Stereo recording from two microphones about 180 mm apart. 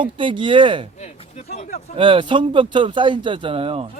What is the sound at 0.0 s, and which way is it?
Speech, 25° right (ahead or behind).